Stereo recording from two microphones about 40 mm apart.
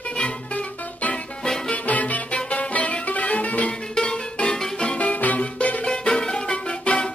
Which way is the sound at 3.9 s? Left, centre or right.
Left.